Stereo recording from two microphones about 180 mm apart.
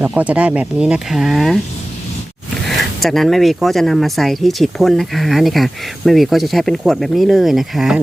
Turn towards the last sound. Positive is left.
turn(degrees=0)  # may be behind; listen again after turning